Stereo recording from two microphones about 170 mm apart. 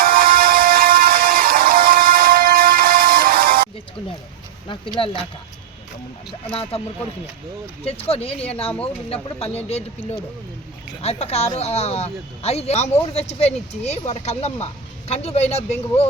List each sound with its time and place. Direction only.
0.0 s music: 60° right (ahead or behind)
4.9 s speech: 30° left (ahead or behind)
6.6 s speech: 35° left (ahead or behind)
7.9 s speech: 35° left (ahead or behind)